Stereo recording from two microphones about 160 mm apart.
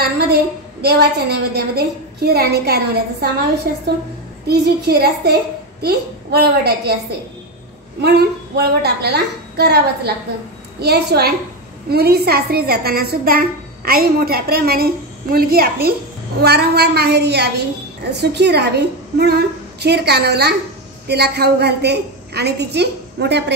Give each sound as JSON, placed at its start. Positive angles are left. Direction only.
{"t": 0.8, "sound": "a child's voice", "side_deg": -85}
{"t": 8.0, "sound": "a woman's voice", "side_deg": -90}
{"t": 16.3, "sound": "a woman's voice", "side_deg": -85}